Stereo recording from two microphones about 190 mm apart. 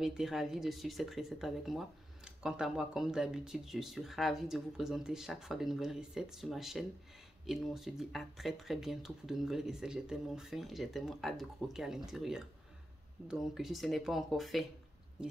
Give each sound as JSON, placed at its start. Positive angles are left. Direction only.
{"t": 0.0, "sound": "speech", "side_deg": 0}